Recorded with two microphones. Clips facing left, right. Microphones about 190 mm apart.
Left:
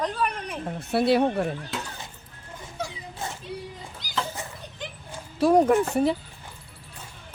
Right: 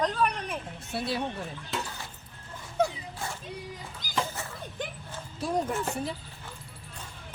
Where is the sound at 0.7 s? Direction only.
65° left (ahead or behind).